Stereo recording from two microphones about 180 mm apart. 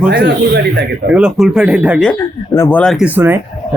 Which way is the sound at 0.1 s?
65° right (ahead or behind).